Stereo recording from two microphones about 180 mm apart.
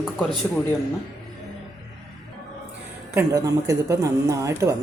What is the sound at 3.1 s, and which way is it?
Speech, 20° right (ahead or behind).